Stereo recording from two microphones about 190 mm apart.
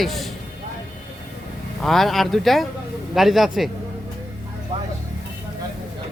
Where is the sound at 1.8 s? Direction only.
Centre (ahead or behind).